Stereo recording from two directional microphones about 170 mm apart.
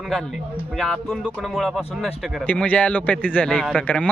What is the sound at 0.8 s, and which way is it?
Speech, centre (ahead or behind).